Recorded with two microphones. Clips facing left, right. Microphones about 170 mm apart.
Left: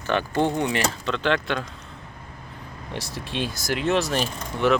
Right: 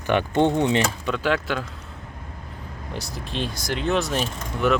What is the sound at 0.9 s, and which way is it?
Speech, 10° right (ahead or behind).